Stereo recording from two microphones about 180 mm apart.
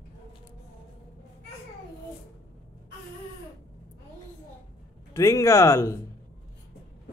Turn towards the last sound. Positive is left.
turn(degrees=15)  # may be behind; listen again after turning